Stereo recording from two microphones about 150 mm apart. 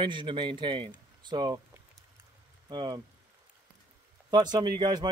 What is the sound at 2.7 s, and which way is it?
Speech, 25° right (ahead or behind).